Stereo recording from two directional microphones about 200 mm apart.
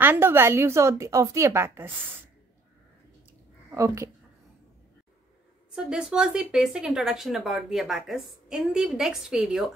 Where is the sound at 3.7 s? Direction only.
15° right (ahead or behind).